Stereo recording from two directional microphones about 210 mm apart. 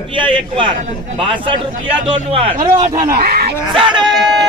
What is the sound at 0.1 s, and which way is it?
A man's voice, 25° right (ahead or behind).